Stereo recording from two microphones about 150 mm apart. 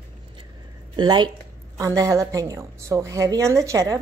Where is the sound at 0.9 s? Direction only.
30° right (ahead or behind).